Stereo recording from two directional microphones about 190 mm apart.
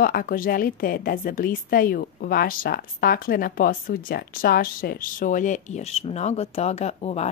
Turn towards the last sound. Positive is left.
turn(degrees=35)  # may be behind; listen again after turning